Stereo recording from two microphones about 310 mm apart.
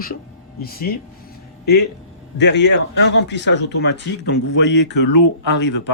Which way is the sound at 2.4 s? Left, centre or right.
Left.